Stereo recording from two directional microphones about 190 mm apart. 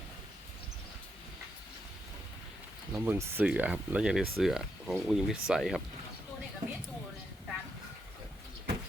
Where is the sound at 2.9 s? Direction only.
10° right (ahead or behind).